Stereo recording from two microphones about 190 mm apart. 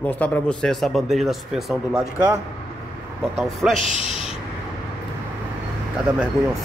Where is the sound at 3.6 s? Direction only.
5° right (ahead or behind).